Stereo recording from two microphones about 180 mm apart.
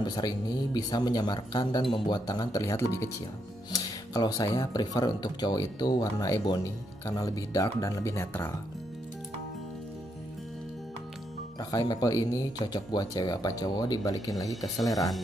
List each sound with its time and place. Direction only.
0.0 s speech: 20° left (ahead or behind)
11.7 s speech: 20° left (ahead or behind)
14.5 s speech: centre (ahead or behind)